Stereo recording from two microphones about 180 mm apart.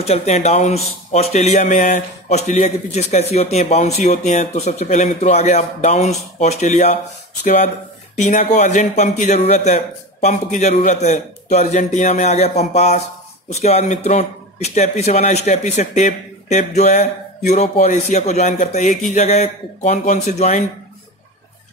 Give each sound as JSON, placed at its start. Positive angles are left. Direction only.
{"t": 0.0, "sound": "a man's voice", "side_deg": 35}
{"t": 8.2, "sound": "a man's voice", "side_deg": 45}